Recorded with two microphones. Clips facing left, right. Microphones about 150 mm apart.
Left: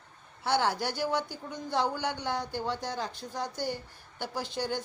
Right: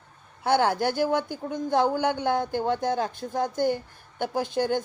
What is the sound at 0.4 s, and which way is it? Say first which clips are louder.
A woman's voice: right 6 dB; 50° right (ahead or behind).